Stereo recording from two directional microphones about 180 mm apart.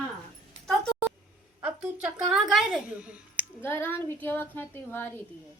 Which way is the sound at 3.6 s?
10° left (ahead or behind).